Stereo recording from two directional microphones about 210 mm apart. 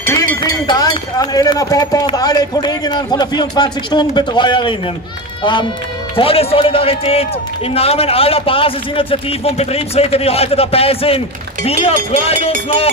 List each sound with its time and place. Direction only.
0.1 s a man's voice: 15° left (ahead or behind)